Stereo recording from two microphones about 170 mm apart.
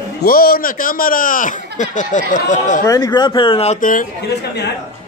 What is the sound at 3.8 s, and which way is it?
Speech, 50° left (ahead or behind).